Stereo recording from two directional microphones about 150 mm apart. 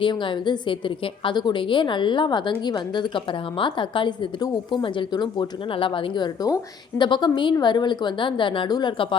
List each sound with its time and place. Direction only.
0.0 s a woman's voice: 35° left (ahead or behind)